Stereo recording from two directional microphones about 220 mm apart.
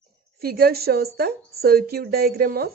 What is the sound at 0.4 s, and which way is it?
A woman's voice, 45° right (ahead or behind).